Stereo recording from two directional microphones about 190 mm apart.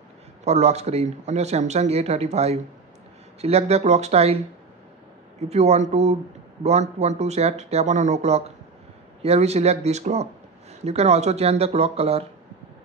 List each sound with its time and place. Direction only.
0.5 s speech: 35° right (ahead or behind)
5.5 s speech: 35° right (ahead or behind)